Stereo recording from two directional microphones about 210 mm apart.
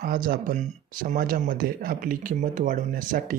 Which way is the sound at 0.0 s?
45° right (ahead or behind).